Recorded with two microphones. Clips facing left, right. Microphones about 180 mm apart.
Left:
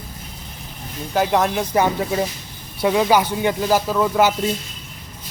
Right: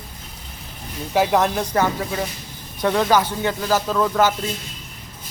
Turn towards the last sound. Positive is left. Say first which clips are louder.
# left 1 dB
turn(degrees=10)  # may be behind; listen again after turning